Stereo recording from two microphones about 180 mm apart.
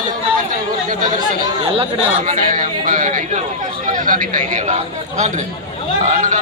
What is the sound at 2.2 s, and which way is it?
A man's voice, 45° right (ahead or behind).